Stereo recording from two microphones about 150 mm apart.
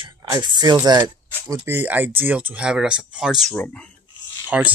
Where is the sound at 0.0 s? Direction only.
30° right (ahead or behind).